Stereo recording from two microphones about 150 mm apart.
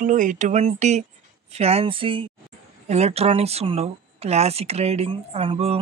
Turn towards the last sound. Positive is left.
turn(degrees=-40)  # may be behind; listen again after turning